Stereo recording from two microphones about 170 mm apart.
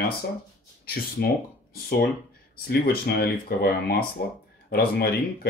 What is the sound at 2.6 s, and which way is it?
Speech, 70° left (ahead or behind).